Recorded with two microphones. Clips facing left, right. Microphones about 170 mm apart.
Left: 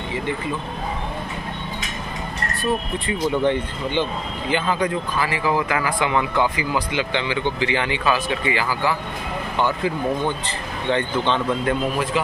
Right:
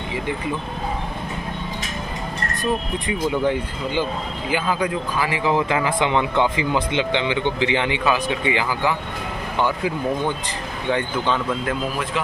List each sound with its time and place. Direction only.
3.4 s a man's voice: 10° right (ahead or behind)